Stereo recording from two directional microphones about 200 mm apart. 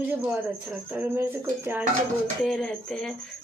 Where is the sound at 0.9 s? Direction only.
10° right (ahead or behind).